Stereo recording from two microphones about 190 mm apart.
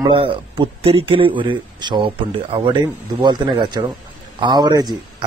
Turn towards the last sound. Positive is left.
turn(degrees=-20)  # may be behind; listen again after turning